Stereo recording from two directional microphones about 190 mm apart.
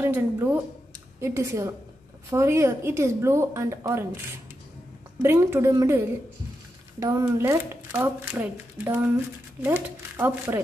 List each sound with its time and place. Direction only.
0.0 s a woman's voice: 10° right (ahead or behind)
5.2 s a woman's voice: 10° right (ahead or behind)
7.0 s a woman's voice: 15° right (ahead or behind)